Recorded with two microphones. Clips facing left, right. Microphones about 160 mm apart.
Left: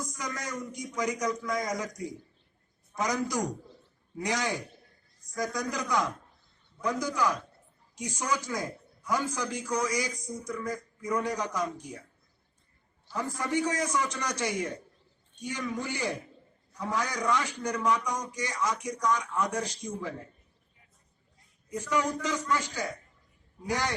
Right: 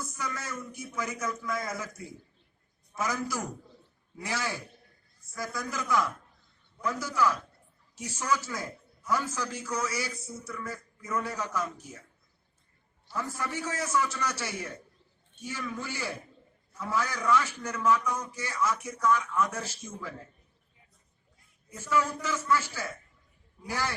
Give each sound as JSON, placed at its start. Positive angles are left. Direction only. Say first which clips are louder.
{"t": 0.0, "sound": "a man's voice", "louder": "left 1 dB", "side_deg": 15}
{"t": 13.1, "sound": "a man's voice", "louder": "left 4 dB", "side_deg": 15}
{"t": 21.7, "sound": "a man's voice", "louder": "even", "side_deg": 15}